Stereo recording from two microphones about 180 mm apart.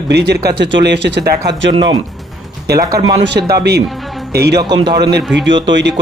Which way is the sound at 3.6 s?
65° right (ahead or behind).